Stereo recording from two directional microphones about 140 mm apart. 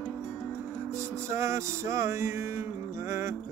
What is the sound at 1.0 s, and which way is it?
Music, 20° right (ahead or behind).